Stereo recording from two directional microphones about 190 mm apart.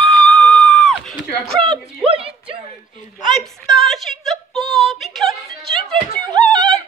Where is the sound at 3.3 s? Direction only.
Centre (ahead or behind).